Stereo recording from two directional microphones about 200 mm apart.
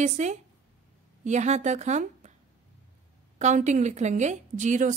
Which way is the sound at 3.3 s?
35° right (ahead or behind).